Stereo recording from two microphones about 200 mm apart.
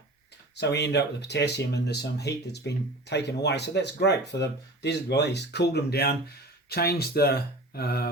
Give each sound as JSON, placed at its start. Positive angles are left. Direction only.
{"t": 0.5, "sound": "speech", "side_deg": 55}